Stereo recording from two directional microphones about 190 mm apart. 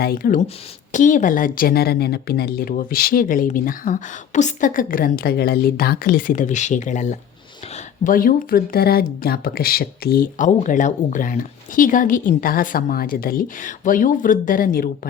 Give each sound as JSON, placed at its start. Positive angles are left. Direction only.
{"t": 0.0, "sound": "speech", "side_deg": 50}